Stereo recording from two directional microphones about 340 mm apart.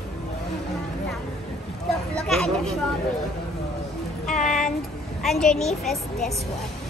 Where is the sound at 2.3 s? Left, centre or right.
Centre.